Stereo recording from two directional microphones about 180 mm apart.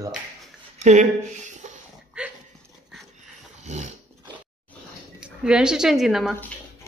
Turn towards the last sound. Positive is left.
turn(degrees=0)  # may be behind; listen again after turning